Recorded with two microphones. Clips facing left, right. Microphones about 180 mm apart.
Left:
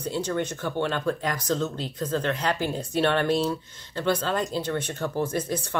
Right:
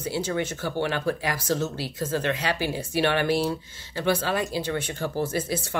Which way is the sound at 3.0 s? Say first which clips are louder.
Even; 80° right.